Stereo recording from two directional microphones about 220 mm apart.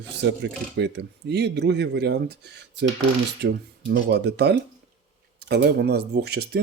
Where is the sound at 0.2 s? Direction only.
50° right (ahead or behind).